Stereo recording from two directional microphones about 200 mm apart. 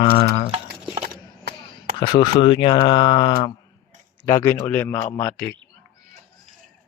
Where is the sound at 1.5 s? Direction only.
55° right (ahead or behind).